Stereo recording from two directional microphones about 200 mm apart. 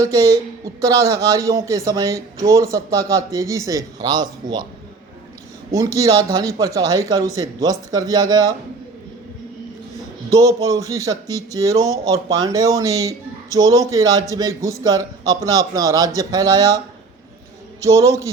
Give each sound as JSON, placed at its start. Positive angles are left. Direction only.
{"t": 0.0, "sound": "speech", "side_deg": -15}
{"t": 5.7, "sound": "speech", "side_deg": -15}
{"t": 10.6, "sound": "speech", "side_deg": -15}
{"t": 17.8, "sound": "speech", "side_deg": -15}